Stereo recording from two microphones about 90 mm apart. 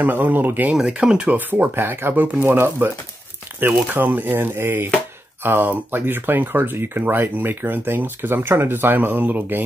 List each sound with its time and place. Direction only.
0.0 s speech: 20° right (ahead or behind)
0.7 s speech: 10° right (ahead or behind)
1.3 s speech: 20° right (ahead or behind)